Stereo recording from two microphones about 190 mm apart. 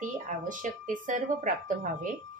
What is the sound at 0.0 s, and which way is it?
Speech, 40° right (ahead or behind).